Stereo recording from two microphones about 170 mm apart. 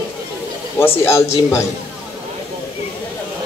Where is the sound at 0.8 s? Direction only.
15° left (ahead or behind).